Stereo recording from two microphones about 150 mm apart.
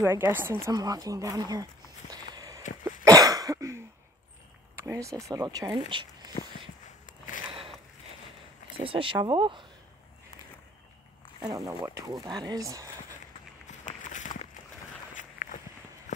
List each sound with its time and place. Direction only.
0.0 s speech: 15° right (ahead or behind)
2.3 s a sound: 25° right (ahead or behind)
2.8 s cough: 25° right (ahead or behind)
4.7 s speech: 20° right (ahead or behind)
7.1 s a sound: 60° left (ahead or behind)
8.7 s speech: 35° right (ahead or behind)
11.4 s speech: 25° right (ahead or behind)
13.7 s walk: 60° left (ahead or behind)